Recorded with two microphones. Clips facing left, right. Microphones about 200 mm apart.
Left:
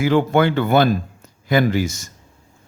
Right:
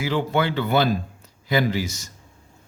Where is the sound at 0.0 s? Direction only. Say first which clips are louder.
Left 7 dB; 50° left (ahead or behind).